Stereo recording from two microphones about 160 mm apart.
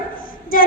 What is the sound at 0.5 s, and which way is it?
Female singing, 60° left (ahead or behind).